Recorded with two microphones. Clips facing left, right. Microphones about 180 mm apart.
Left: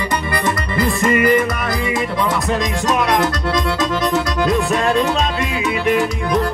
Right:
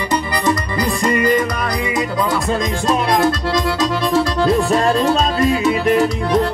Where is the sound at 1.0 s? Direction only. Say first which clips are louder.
Left 1 dB; 25° left (ahead or behind).